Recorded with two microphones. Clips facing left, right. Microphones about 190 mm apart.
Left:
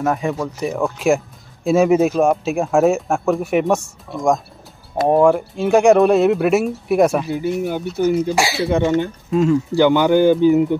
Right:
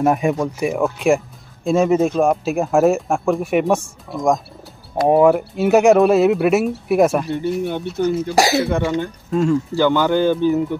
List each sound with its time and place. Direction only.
0.0 s speech: 15° right (ahead or behind); by 8.4 s 10° left (ahead or behind)
8.4 s speech: 45° right (ahead or behind)
8.6 s speech: 20° left (ahead or behind)
9.3 s speech: centre (ahead or behind)
9.8 s speech: 15° left (ahead or behind)